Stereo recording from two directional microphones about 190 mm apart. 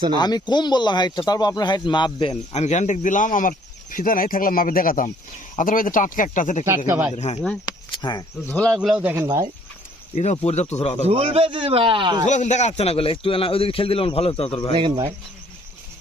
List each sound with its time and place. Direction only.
0.2 s speech: 20° left (ahead or behind); by 6.7 s 40° left (ahead or behind)
6.7 s speech: 15° right (ahead or behind)
7.6 s speech: 20° left (ahead or behind)
8.4 s a man's voice: 5° left (ahead or behind)
10.3 s a man's voice: 35° left (ahead or behind)
11.0 s a man's voice: 30° right (ahead or behind)
12.2 s a man's voice: 40° left (ahead or behind)
14.8 s a man's voice: 25° right (ahead or behind)